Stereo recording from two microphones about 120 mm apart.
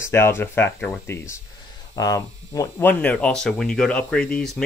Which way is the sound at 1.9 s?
30° left (ahead or behind).